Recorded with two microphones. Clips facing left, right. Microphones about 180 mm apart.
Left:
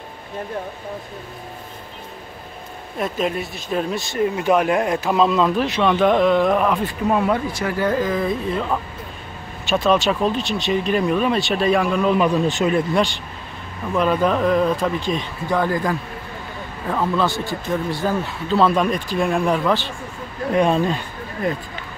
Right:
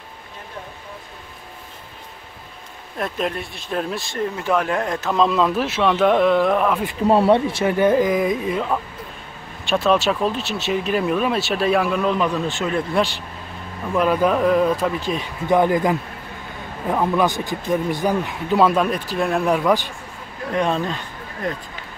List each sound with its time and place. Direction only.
3.0 s speech: centre (ahead or behind)
4.2 s speech: 15° left (ahead or behind); by 6.8 s centre (ahead or behind)
7.1 s speech: 30° right (ahead or behind); by 8.6 s 15° right (ahead or behind)
9.7 s speech: centre (ahead or behind)
12.2 s speech: 15° left (ahead or behind)
12.9 s speech: 5° right (ahead or behind)
15.4 s a man's voice: 20° right (ahead or behind)
20.5 s speech: 10° left (ahead or behind)